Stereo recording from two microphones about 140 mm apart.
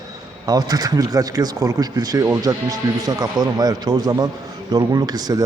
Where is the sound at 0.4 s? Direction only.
25° right (ahead or behind).